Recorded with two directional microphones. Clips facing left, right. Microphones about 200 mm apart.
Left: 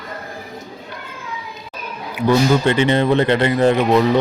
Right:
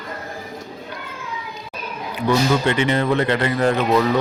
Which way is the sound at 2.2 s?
30° left (ahead or behind).